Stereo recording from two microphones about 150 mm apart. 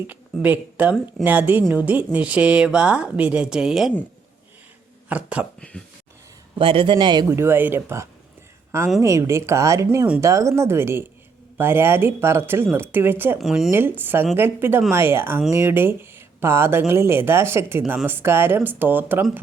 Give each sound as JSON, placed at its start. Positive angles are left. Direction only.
{"t": 0.1, "sound": "a woman's voice", "side_deg": -10}
{"t": 5.0, "sound": "speech", "side_deg": -10}
{"t": 5.5, "sound": "speech", "side_deg": 5}
{"t": 6.6, "sound": "a man's voice", "side_deg": -35}
{"t": 7.3, "sound": "a woman's voice", "side_deg": -15}
{"t": 13.4, "sound": "speech", "side_deg": 0}
{"t": 13.7, "sound": "a woman's voice", "side_deg": -15}